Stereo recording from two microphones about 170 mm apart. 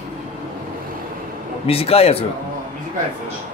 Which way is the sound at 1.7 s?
35° left (ahead or behind).